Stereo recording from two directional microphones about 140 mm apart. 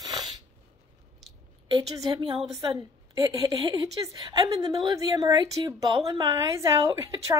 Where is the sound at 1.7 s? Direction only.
30° right (ahead or behind).